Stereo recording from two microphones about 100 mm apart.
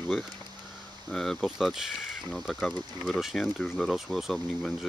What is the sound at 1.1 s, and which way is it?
Speech, 5° left (ahead or behind).